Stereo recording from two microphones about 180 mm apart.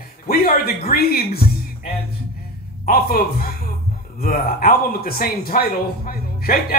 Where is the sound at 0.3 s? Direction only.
55° left (ahead or behind).